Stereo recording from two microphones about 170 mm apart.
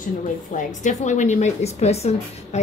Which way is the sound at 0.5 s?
45° left (ahead or behind).